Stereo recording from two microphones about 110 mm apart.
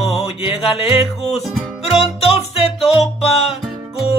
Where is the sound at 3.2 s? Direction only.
70° left (ahead or behind).